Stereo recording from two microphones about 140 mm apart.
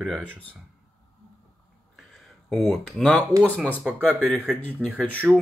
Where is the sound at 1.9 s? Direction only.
Centre (ahead or behind).